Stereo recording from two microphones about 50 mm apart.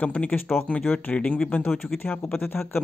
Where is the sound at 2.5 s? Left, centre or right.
Left.